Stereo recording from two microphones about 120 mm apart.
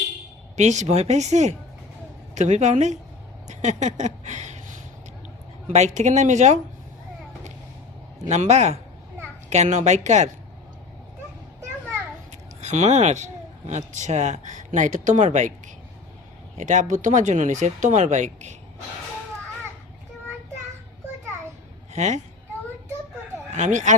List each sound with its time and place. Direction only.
0.5 s speech: 75° right (ahead or behind)
3.4 s a sound: 75° right (ahead or behind)
5.6 s speech: 80° right
8.3 s speech: 70° right (ahead or behind)
12.3 s speech: 70° right (ahead or behind)
21.9 s speech: 80° right
23.6 s speech: 85° right